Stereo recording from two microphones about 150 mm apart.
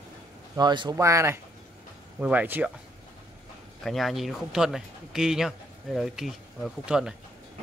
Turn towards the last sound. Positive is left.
turn(degrees=-5)  # may be behind; listen again after turning